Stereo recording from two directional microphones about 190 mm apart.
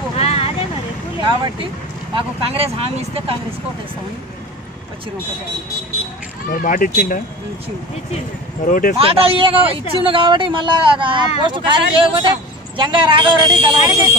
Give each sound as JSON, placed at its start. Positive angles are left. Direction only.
{"t": 0.1, "sound": "vehicle", "side_deg": 35}
{"t": 2.1, "sound": "speech", "side_deg": -30}
{"t": 6.5, "sound": "speech", "side_deg": 45}
{"t": 8.6, "sound": "speech", "side_deg": 45}
{"t": 8.9, "sound": "speech", "side_deg": -30}
{"t": 13.7, "sound": "speech", "side_deg": 30}